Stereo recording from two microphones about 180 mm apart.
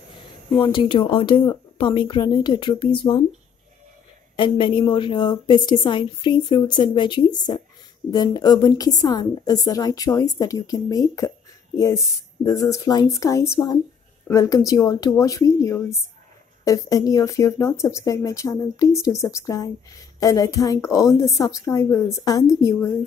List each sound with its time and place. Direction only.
0.6 s a woman's voice: 25° left (ahead or behind)
4.4 s a woman's voice: 30° left (ahead or behind)